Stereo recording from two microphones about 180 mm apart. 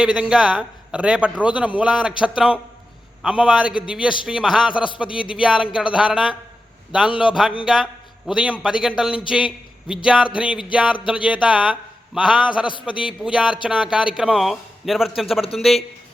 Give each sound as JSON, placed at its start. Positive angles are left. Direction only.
{"t": 0.0, "sound": "a man's voice", "side_deg": -5}
{"t": 4.7, "sound": "speech", "side_deg": 25}
{"t": 5.4, "sound": "a man's voice", "side_deg": -5}